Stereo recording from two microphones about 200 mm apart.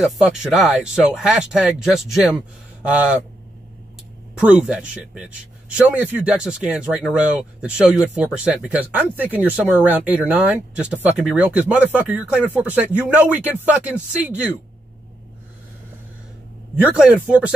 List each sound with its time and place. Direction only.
0.0 s speech: 5° right (ahead or behind)
4.4 s a man's voice: 5° right (ahead or behind)
16.8 s a man's voice: 5° right (ahead or behind)